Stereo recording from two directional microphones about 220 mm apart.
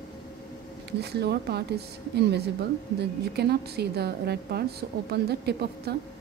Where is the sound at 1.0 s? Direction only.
50° right (ahead or behind).